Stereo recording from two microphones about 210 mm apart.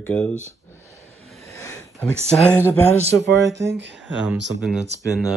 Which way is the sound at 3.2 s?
55° right (ahead or behind).